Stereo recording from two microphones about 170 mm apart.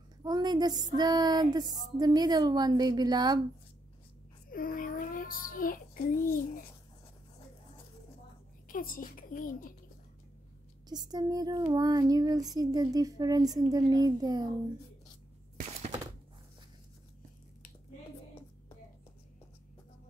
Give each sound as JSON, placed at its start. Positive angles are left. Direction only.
{"t": 0.2, "sound": "child singing", "side_deg": -25}
{"t": 4.5, "sound": "a child's voice", "side_deg": 55}
{"t": 8.6, "sound": "a child's voice", "side_deg": 55}
{"t": 10.9, "sound": "child singing", "side_deg": -25}